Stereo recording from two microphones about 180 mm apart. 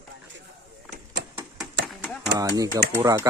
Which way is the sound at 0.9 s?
65° right (ahead or behind).